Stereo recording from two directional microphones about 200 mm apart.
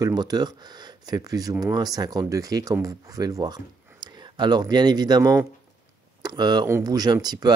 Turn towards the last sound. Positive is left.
turn(degrees=-20)  # may be behind; listen again after turning